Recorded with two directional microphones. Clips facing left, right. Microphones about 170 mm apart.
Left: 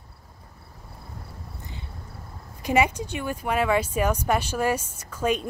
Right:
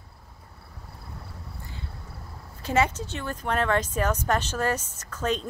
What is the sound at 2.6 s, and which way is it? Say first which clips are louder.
Speech: left 2 dB; 15° left (ahead or behind).